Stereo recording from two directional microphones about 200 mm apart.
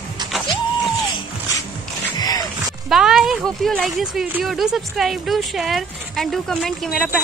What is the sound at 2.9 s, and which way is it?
Speech, centre (ahead or behind).